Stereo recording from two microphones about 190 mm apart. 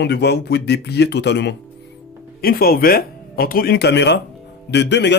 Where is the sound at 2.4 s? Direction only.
50° left (ahead or behind).